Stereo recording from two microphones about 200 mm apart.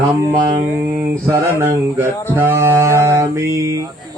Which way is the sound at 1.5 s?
10° right (ahead or behind).